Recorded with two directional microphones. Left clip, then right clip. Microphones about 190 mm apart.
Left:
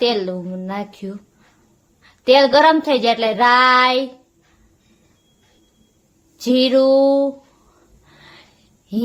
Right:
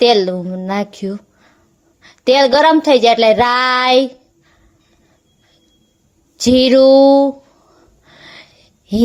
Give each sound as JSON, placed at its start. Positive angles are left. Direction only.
{"t": 0.0, "sound": "speech", "side_deg": -35}
{"t": 6.3, "sound": "speech", "side_deg": -40}
{"t": 8.0, "sound": "a sound", "side_deg": -30}